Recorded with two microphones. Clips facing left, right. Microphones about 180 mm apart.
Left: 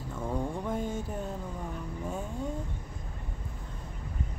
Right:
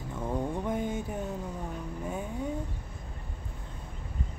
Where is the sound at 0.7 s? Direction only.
15° right (ahead or behind).